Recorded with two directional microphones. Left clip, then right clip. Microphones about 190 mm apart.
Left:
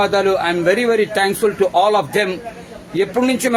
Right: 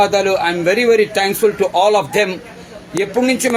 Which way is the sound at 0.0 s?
20° right (ahead or behind).